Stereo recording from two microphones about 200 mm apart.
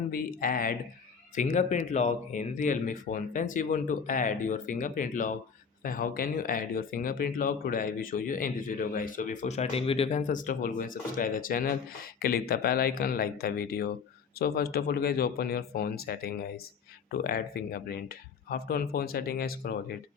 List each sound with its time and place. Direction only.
0.1 s speech: 45° left (ahead or behind)